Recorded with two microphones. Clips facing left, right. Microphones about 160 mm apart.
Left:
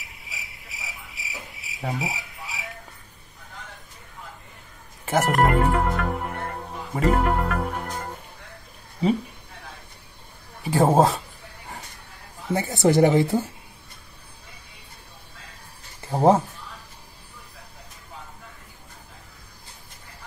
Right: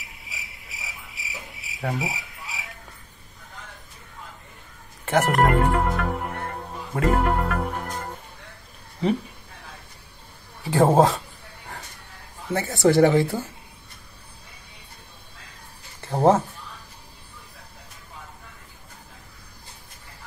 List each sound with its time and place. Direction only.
0.0 s insect: centre (ahead or behind)
5.0 s music: 5° left (ahead or behind)
10.6 s a man's voice: 10° left (ahead or behind)
12.5 s a woman's voice: 20° left (ahead or behind)
16.1 s speech: 15° left (ahead or behind)